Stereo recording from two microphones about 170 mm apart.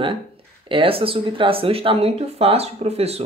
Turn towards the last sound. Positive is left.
turn(degrees=-35)  # may be behind; listen again after turning